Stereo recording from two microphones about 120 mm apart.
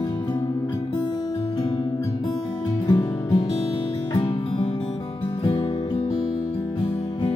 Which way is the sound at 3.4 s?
55° left (ahead or behind).